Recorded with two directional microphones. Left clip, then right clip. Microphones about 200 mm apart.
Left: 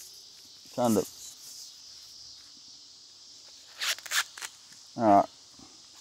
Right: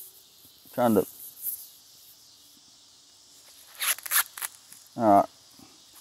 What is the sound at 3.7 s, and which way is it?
Scissors, 5° left (ahead or behind).